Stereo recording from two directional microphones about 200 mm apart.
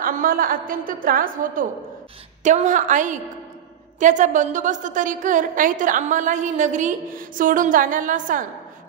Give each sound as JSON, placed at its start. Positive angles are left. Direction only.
{"t": 0.0, "sound": "a woman's voice", "side_deg": -45}